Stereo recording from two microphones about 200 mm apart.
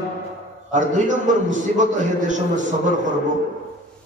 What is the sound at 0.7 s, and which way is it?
A man's voice, 40° right (ahead or behind).